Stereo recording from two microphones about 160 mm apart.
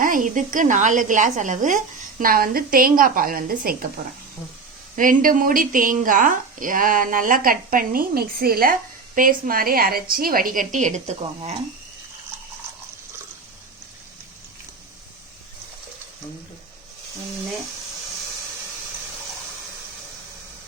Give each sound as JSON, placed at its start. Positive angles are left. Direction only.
{"t": 0.0, "sound": "speech", "side_deg": -55}
{"t": 4.9, "sound": "speech", "side_deg": -60}